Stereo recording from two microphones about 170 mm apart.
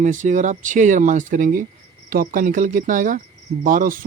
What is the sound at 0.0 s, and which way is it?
Speech, 50° right (ahead or behind).